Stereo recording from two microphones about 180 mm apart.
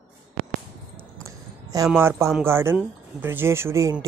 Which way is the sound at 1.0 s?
15° right (ahead or behind).